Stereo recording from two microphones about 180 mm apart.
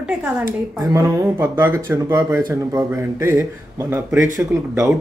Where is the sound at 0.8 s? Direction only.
15° right (ahead or behind).